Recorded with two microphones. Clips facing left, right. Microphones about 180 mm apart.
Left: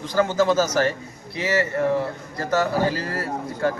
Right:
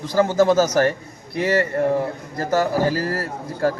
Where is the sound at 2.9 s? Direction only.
40° right (ahead or behind).